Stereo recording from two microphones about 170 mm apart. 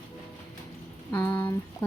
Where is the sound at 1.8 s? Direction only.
10° left (ahead or behind).